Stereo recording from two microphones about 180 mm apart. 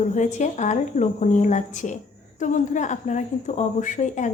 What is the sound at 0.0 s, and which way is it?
A woman's voice, 40° left (ahead or behind).